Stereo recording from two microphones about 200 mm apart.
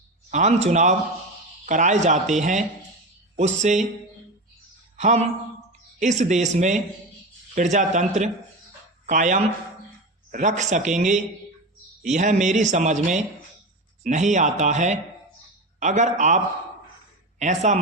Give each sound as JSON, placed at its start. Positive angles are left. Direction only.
{"t": 0.3, "sound": "a man's voice", "side_deg": -35}
{"t": 4.9, "sound": "a man's voice", "side_deg": -35}
{"t": 17.4, "sound": "a man's voice", "side_deg": -35}